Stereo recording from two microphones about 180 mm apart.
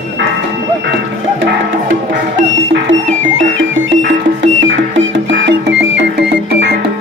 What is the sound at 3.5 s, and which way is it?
Music, 90° right.